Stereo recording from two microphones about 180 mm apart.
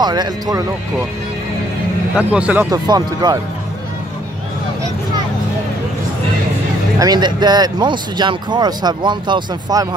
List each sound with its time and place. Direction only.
0.0 s speech: 25° right (ahead or behind)
2.1 s a man's voice: 10° right (ahead or behind)
7.0 s speech: 25° right (ahead or behind)